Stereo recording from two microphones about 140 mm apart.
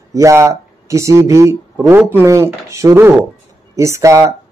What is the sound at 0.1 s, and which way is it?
A man's voice, 20° right (ahead or behind).